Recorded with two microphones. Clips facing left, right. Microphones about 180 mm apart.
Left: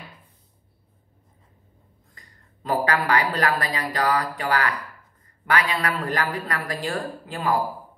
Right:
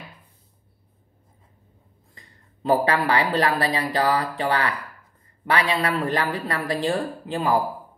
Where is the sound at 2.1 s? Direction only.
25° right (ahead or behind).